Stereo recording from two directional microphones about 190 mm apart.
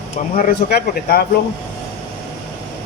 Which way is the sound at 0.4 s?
55° left (ahead or behind).